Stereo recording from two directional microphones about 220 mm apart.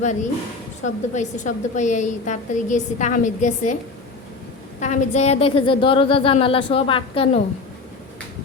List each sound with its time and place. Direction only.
0.0 s a woman's voice: 35° left (ahead or behind)
4.8 s a woman's voice: 35° left (ahead or behind)